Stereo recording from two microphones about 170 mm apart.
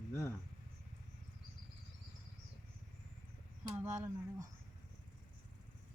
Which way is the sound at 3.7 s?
15° right (ahead or behind).